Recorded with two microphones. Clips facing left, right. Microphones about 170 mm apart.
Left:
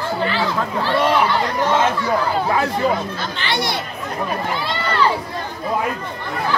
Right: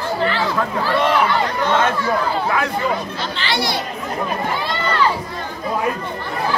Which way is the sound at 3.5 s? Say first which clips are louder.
Right 1 dB; 55° left (ahead or behind).